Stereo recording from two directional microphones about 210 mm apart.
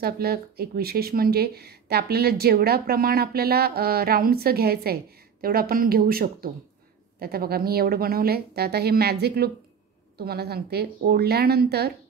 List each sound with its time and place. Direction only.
0.0 s speech: 45° right (ahead or behind)